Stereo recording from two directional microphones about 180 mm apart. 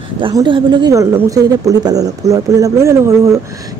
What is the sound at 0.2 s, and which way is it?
Speech, 25° right (ahead or behind).